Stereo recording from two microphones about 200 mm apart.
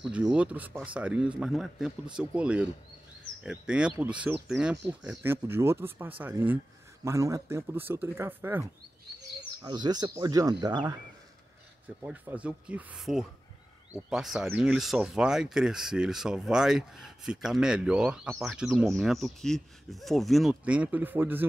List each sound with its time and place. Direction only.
0.0 s speech: 5° right (ahead or behind)
9.6 s speech: 20° right (ahead or behind)
12.0 s speech: 10° right (ahead or behind)